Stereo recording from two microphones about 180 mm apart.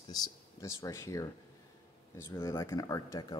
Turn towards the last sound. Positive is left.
turn(degrees=20)  # may be behind; listen again after turning